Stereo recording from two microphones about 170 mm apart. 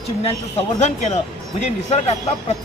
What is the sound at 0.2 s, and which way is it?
Speech, 40° left (ahead or behind).